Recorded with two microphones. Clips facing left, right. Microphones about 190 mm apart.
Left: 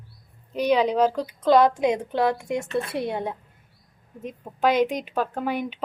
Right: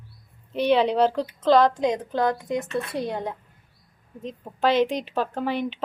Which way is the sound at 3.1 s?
20° left (ahead or behind).